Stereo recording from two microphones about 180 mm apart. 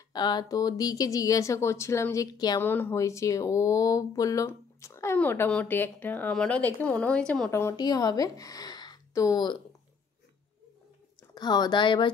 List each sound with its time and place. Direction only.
0.1 s speech: 25° left (ahead or behind)
2.6 s speech: 10° left (ahead or behind)
7.6 s speech: 20° left (ahead or behind)
11.3 s speech: 25° left (ahead or behind)